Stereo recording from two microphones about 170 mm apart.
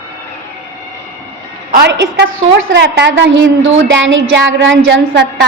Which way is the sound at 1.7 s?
80° right.